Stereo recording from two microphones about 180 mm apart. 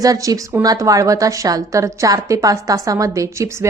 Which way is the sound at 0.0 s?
20° right (ahead or behind).